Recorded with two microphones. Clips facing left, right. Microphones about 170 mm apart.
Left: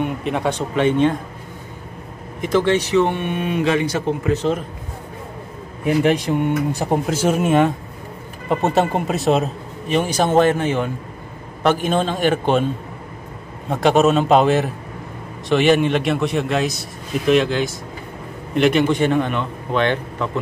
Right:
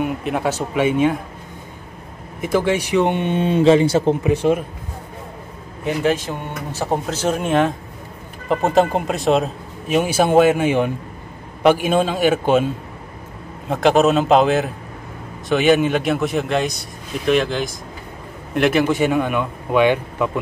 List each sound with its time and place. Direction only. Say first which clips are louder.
0.0 s speech: even; 5° right (ahead or behind)
2.4 s speech: left 1 dB; 10° right (ahead or behind); by 4.3 s 30° right (ahead or behind)
4.3 s a man's voice: even; 10° right (ahead or behind)
5.9 s a man's voice: left 3 dB; 15° left (ahead or behind)
8.7 s a man's voice: right 2 dB; centre (ahead or behind)